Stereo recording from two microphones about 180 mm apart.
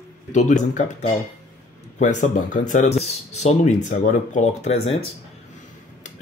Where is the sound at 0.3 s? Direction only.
40° left (ahead or behind).